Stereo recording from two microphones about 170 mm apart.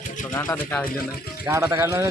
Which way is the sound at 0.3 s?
15° left (ahead or behind).